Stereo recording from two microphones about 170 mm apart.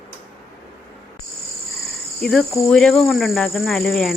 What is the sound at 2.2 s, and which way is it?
Speech, centre (ahead or behind).